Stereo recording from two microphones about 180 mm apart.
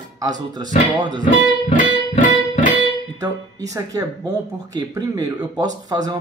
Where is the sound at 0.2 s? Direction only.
20° right (ahead or behind).